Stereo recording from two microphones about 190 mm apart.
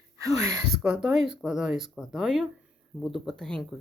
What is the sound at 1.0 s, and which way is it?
Speech, 5° right (ahead or behind).